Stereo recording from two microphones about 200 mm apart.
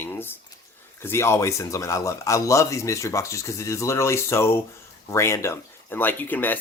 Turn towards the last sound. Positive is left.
turn(degrees=10)  # may be behind; listen again after turning